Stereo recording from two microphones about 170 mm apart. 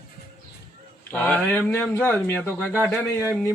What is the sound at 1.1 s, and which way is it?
Speech, 10° left (ahead or behind).